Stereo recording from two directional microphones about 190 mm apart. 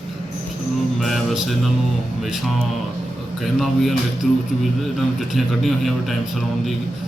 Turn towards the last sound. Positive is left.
turn(degrees=0)  # may be behind; listen again after turning